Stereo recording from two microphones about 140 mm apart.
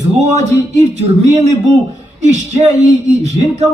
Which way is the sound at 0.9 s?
55° right (ahead or behind).